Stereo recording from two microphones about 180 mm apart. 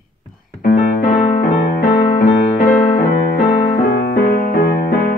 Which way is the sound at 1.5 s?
45° left (ahead or behind).